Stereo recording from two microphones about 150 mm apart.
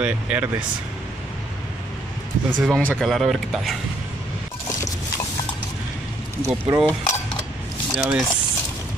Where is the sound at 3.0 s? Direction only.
Centre (ahead or behind).